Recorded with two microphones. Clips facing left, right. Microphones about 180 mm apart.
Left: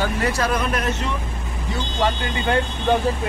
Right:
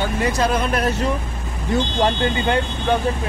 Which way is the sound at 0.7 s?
35° right (ahead or behind).